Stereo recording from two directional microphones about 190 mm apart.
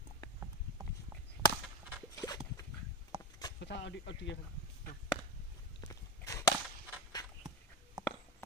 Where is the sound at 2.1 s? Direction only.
20° left (ahead or behind).